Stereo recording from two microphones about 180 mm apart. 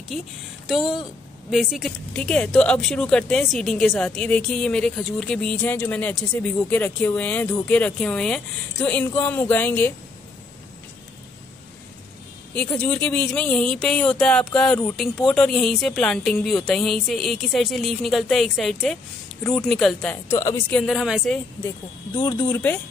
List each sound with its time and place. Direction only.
0.1 s speech: centre (ahead or behind)
12.5 s speech: 5° left (ahead or behind)
20.8 s speech: centre (ahead or behind)
22.1 s speech: 25° left (ahead or behind)